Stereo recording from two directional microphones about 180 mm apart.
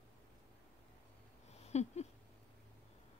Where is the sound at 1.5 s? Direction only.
35° left (ahead or behind).